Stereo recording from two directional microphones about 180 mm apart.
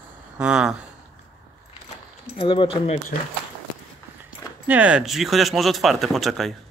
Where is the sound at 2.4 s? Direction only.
30° left (ahead or behind).